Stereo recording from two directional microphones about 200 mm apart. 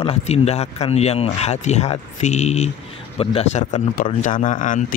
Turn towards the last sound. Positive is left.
turn(degrees=40)  # may be behind; listen again after turning